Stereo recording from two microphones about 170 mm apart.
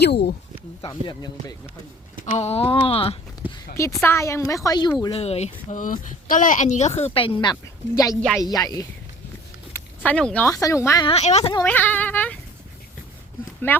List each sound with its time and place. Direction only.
0.0 s speech: 75° left (ahead or behind)
0.8 s speech: 25° left (ahead or behind)
2.2 s speech: 40° left (ahead or behind)
3.4 s a sound: 10° right (ahead or behind)
4.0 s a woman's voice: 15° left (ahead or behind)
5.1 s speech: 40° left (ahead or behind)
7.5 s a woman's voice: 20° left (ahead or behind)
8.1 s a woman's voice: centre (ahead or behind)
8.4 s speech: 20° left (ahead or behind)
9.7 s a sound: 10° left (ahead or behind)
10.5 s speech: 20° left (ahead or behind)
11.0 s speech: 40° left (ahead or behind)
11.6 s a woman's voice: 10° left (ahead or behind)
13.7 s a woman's voice: 10° left (ahead or behind)